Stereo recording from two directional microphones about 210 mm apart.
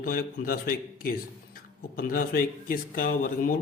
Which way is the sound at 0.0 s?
45° left (ahead or behind).